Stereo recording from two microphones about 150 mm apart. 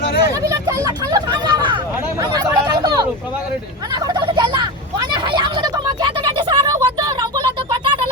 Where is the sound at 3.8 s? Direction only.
25° right (ahead or behind).